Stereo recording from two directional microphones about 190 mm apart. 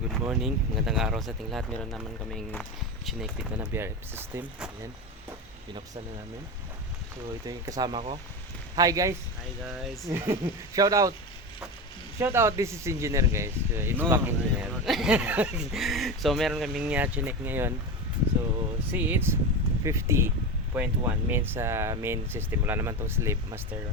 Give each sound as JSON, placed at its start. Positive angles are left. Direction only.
{"t": 0.1, "sound": "speech", "side_deg": 0}
{"t": 3.6, "sound": "speech", "side_deg": -15}
{"t": 7.4, "sound": "speech", "side_deg": -20}
{"t": 9.6, "sound": "speech", "side_deg": 0}
{"t": 10.1, "sound": "speech", "side_deg": -15}
{"t": 12.2, "sound": "speech", "side_deg": -15}
{"t": 18.9, "sound": "speech", "side_deg": -10}